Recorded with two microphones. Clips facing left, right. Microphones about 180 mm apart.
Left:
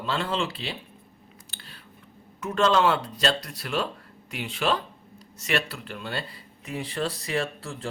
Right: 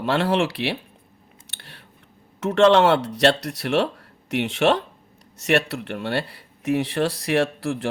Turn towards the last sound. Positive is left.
turn(degrees=-75)  # may be behind; listen again after turning